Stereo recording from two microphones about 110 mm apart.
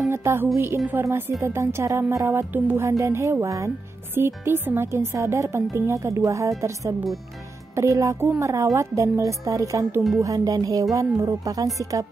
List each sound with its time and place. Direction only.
0.1 s a woman's voice: 25° right (ahead or behind)